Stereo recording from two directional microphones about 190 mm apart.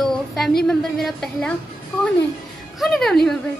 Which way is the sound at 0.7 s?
Centre (ahead or behind).